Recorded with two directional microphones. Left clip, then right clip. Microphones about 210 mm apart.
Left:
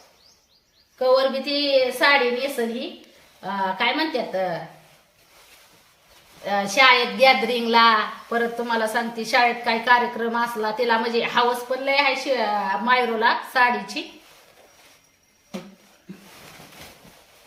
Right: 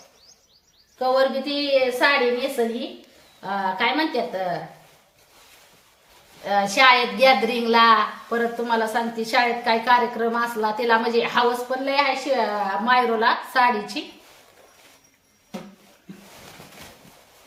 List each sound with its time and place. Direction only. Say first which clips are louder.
0.9 s a woman's voice: left 1 dB; centre (ahead or behind)
3.4 s a woman's voice: even; 5° right (ahead or behind)
6.4 s a woman's voice: right 1 dB; 5° right (ahead or behind)